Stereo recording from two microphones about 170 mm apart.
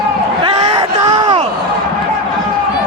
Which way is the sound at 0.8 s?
25° right (ahead or behind).